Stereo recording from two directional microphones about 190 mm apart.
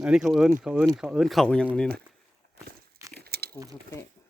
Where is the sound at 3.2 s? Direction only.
55° right (ahead or behind).